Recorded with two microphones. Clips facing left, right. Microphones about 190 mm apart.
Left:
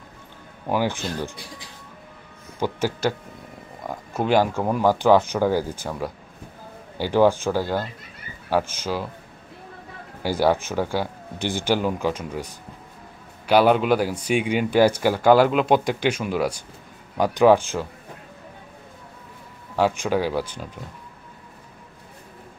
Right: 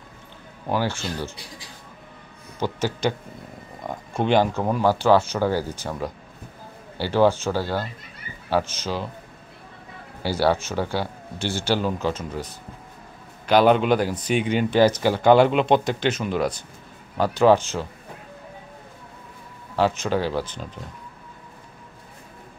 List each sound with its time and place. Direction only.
0.7 s speech: 15° left (ahead or behind)
2.6 s speech: 10° left (ahead or behind)
10.2 s speech: 15° left (ahead or behind)
19.7 s speech: 10° left (ahead or behind)